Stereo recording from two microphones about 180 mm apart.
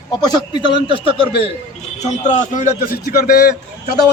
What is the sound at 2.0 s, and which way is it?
A man's voice, 40° left (ahead or behind).